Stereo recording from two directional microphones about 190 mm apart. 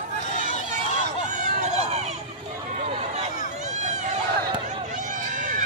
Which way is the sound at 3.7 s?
40° right (ahead or behind).